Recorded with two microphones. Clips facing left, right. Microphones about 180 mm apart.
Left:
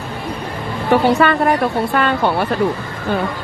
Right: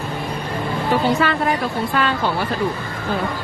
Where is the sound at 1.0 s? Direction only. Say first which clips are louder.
Left 4 dB; 60° left (ahead or behind).